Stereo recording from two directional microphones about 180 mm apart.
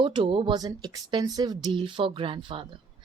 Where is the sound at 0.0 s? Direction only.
30° right (ahead or behind).